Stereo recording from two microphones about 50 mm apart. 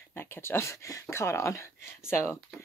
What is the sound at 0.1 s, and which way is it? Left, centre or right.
Speech, left.